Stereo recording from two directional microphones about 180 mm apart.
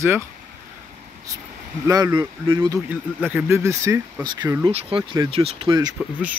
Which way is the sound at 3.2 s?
10° right (ahead or behind).